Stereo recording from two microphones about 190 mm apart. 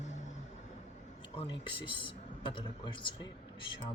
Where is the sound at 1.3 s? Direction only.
25° left (ahead or behind).